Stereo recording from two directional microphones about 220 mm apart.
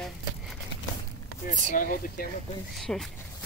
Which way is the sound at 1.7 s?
40° left (ahead or behind).